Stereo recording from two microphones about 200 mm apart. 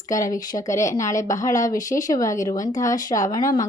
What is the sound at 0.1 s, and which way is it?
Speech, 15° left (ahead or behind).